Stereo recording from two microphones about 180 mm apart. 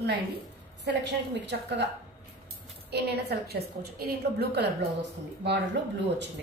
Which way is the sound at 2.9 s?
65° right (ahead or behind).